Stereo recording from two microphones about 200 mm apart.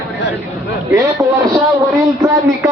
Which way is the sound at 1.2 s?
15° right (ahead or behind).